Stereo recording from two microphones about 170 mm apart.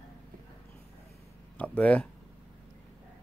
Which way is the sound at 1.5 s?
5° left (ahead or behind).